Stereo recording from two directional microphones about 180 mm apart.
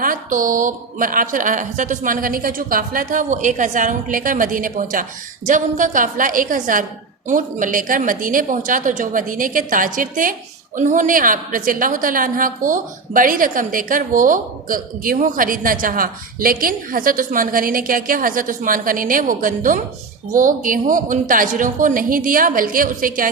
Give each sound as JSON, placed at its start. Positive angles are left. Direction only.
{"t": 0.0, "sound": "a woman's voice", "side_deg": -50}